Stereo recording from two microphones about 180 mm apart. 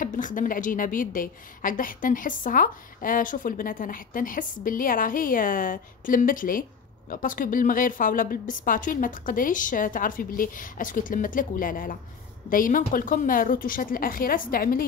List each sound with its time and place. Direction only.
0.0 s a woman's voice: 45° left (ahead or behind)